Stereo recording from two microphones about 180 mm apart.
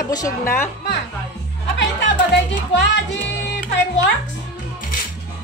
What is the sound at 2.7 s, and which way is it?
Speech, 75° left (ahead or behind).